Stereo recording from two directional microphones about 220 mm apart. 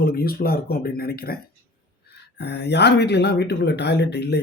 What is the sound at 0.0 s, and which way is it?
Speech, 45° left (ahead or behind).